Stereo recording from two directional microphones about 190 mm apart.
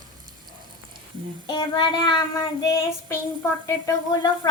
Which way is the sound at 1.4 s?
25° left (ahead or behind).